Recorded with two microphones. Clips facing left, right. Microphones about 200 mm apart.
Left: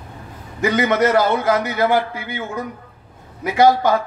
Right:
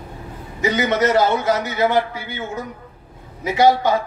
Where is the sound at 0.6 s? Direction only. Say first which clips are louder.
Left 2 dB; 55° left (ahead or behind).